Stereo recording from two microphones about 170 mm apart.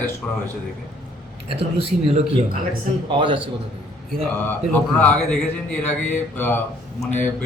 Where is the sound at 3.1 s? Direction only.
30° right (ahead or behind).